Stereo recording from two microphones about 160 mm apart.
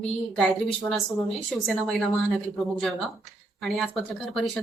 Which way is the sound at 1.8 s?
Centre (ahead or behind).